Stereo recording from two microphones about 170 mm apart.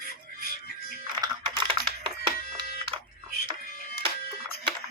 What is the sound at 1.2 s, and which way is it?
Computer keyboard, 25° right (ahead or behind).